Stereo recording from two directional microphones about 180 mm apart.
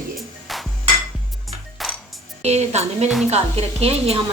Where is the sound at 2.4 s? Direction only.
35° right (ahead or behind).